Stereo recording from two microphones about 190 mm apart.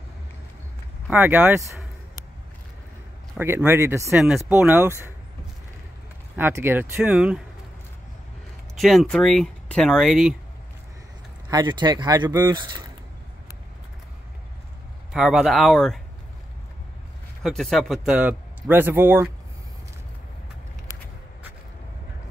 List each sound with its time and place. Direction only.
1.1 s speech: 10° right (ahead or behind)
3.3 s speech: 10° right (ahead or behind)
6.3 s speech: 10° right (ahead or behind)
8.7 s speech: centre (ahead or behind)
11.4 s speech: 20° right (ahead or behind)
15.1 s speech: centre (ahead or behind)
17.4 s speech: centre (ahead or behind)